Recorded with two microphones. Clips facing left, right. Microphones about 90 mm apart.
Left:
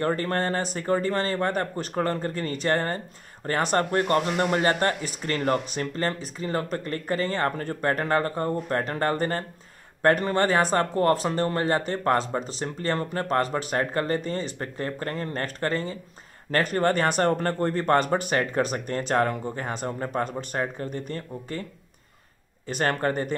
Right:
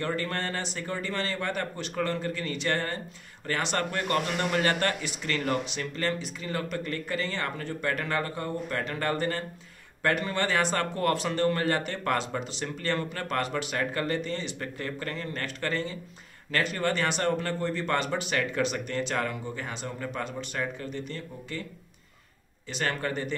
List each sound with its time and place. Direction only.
0.0 s speech: 40° left (ahead or behind)
22.7 s speech: 45° left (ahead or behind)